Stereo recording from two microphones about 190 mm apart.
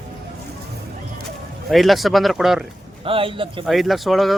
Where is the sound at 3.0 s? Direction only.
30° right (ahead or behind).